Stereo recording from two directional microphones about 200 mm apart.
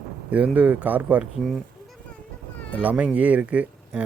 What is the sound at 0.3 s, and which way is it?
Speech, 5° right (ahead or behind).